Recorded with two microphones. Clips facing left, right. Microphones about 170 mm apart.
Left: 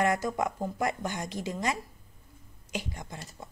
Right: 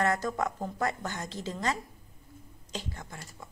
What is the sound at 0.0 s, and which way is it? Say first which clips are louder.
Speech: left 1 dB; 15° left (ahead or behind).